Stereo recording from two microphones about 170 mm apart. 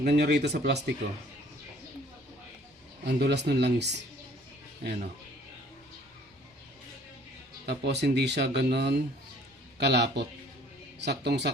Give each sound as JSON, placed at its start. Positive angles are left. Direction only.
{"t": 0.0, "sound": "speech", "side_deg": -75}
{"t": 3.0, "sound": "speech", "side_deg": -75}
{"t": 4.8, "sound": "speech", "side_deg": -60}
{"t": 7.7, "sound": "speech", "side_deg": -80}
{"t": 9.7, "sound": "speech", "side_deg": -90}